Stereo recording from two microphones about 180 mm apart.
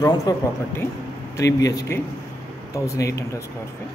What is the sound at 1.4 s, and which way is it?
Speech, 20° left (ahead or behind).